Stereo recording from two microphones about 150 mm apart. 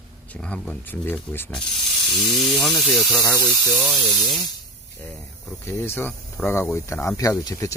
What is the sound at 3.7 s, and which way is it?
Speech, centre (ahead or behind).